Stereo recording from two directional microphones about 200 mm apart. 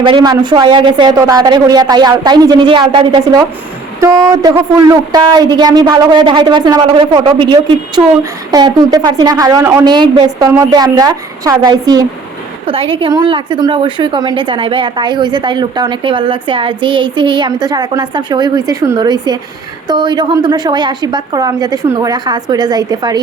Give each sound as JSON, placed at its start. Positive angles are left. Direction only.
{"t": 0.0, "sound": "speech", "side_deg": -20}